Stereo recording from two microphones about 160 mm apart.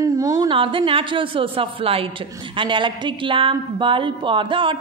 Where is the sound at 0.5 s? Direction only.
30° right (ahead or behind).